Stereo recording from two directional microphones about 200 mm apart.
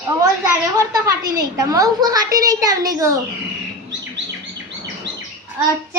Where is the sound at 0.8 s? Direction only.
15° right (ahead or behind).